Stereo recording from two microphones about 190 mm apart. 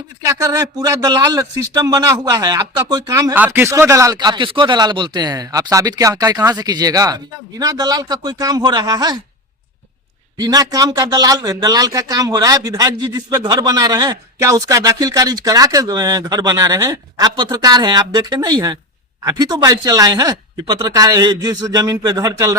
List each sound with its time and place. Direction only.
0.3 s speech: 20° right (ahead or behind)
10.3 s speech: 20° right (ahead or behind)